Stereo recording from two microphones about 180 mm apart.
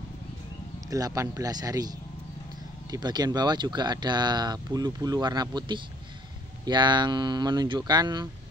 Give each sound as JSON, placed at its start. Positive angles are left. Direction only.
{"t": 0.8, "sound": "speech", "side_deg": -20}